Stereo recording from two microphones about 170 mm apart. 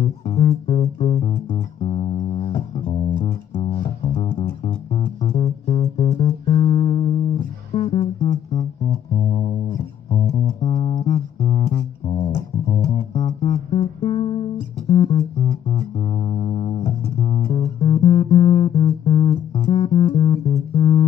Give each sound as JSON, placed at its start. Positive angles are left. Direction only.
{"t": 0.4, "sound": "music", "side_deg": 30}
{"t": 13.7, "sound": "music", "side_deg": 30}